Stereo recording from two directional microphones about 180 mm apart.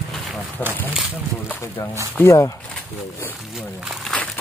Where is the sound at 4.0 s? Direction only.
5° left (ahead or behind).